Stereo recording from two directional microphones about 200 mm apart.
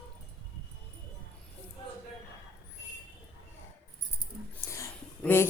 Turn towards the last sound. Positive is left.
turn(degrees=10)  # may be behind; listen again after turning